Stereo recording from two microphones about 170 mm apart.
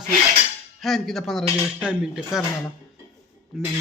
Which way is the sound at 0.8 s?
Centre (ahead or behind).